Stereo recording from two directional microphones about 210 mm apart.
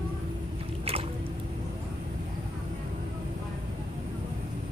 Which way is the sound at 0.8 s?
30° right (ahead or behind).